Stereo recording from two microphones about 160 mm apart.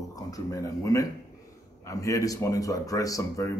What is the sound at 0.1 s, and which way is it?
Speech, 20° left (ahead or behind).